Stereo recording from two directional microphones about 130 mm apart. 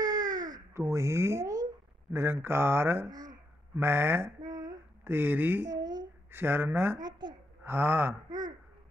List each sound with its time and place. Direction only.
0.0 s baby cry: 30° right (ahead or behind)
2.1 s mantra: 20° right (ahead or behind)
3.1 s a sound: 30° right (ahead or behind)
3.8 s mantra: 20° right (ahead or behind)
5.0 s mantra: 15° right (ahead or behind)
5.7 s a sound: 30° right (ahead or behind)
6.3 s mantra: 20° right (ahead or behind)
7.0 s a woman's voice: 35° right (ahead or behind)
7.6 s mantra: 15° right (ahead or behind)
8.3 s a sound: 30° right (ahead or behind)